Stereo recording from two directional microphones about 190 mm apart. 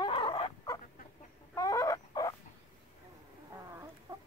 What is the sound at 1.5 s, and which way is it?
Dog, 15° left (ahead or behind).